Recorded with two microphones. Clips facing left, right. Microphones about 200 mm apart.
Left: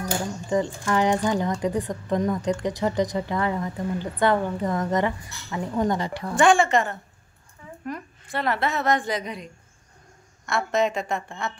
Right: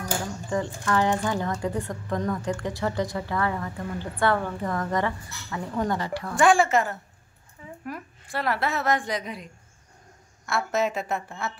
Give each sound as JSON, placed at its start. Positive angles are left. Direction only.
{"t": 0.5, "sound": "speech", "side_deg": 15}
{"t": 6.3, "sound": "a woman's voice", "side_deg": 0}